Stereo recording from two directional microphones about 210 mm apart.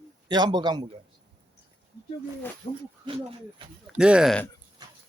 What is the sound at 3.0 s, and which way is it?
Speech, 25° right (ahead or behind).